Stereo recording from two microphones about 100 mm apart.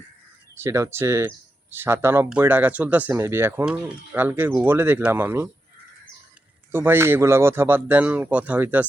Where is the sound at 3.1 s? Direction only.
25° right (ahead or behind).